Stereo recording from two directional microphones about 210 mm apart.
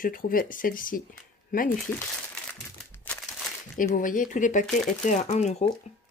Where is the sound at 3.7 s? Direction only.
40° left (ahead or behind).